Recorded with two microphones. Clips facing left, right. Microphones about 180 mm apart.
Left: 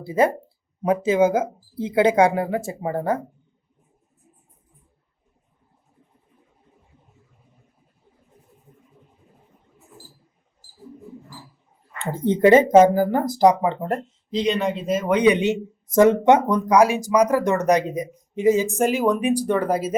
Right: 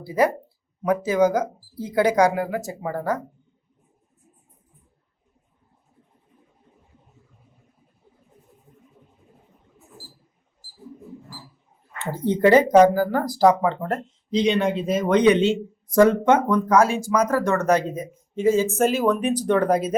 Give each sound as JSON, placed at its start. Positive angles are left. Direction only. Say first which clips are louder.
{"t": 0.0, "sound": "speech", "louder": "left 1 dB", "side_deg": 25}
{"t": 12.1, "sound": "speech", "louder": "left 2 dB", "side_deg": 20}
{"t": 14.3, "sound": "speech", "louder": "right 2 dB", "side_deg": 0}